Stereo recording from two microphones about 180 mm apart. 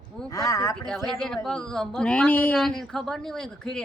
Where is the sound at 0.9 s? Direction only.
Centre (ahead or behind).